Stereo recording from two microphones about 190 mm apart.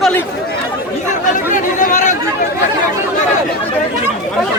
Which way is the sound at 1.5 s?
40° left (ahead or behind).